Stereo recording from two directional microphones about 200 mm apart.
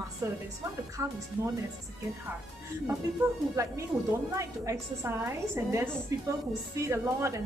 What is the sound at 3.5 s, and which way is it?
A woman's voice, 15° right (ahead or behind).